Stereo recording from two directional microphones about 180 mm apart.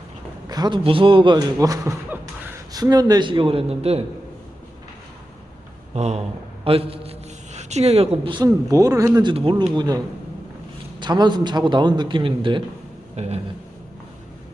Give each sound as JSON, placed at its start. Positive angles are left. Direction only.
{"t": 0.4, "sound": "a man's voice", "side_deg": -20}
{"t": 5.9, "sound": "a man's voice", "side_deg": -35}
{"t": 11.0, "sound": "a man's voice", "side_deg": -25}